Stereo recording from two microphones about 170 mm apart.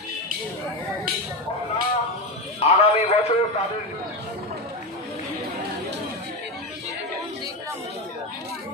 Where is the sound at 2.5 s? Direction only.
40° left (ahead or behind).